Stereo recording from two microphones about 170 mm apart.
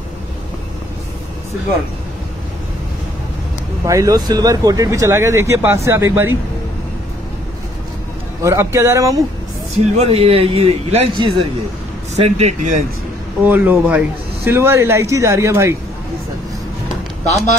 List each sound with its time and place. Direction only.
3.8 s speech: 20° right (ahead or behind)
8.4 s speech: 15° right (ahead or behind)
9.9 s speech: 35° right (ahead or behind)
13.5 s speech: 10° right (ahead or behind)